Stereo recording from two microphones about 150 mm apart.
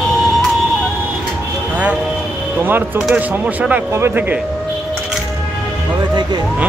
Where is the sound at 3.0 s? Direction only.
5° right (ahead or behind).